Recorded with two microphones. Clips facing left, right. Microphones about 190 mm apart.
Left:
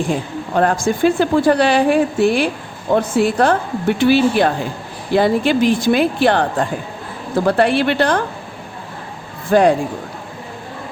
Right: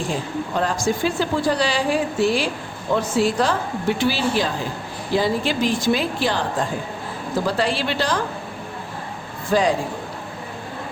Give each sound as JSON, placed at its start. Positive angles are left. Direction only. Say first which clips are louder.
{"t": 0.5, "sound": "a woman's voice", "louder": "left 6 dB", "side_deg": 55}
{"t": 9.5, "sound": "a woman's voice", "louder": "left 6 dB", "side_deg": 55}